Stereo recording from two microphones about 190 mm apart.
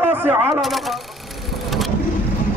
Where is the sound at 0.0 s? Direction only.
10° right (ahead or behind).